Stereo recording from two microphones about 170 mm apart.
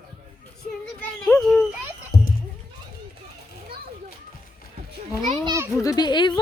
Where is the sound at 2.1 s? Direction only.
65° left (ahead or behind).